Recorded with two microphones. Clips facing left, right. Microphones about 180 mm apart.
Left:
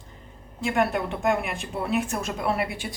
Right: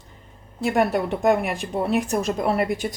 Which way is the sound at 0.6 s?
40° right (ahead or behind).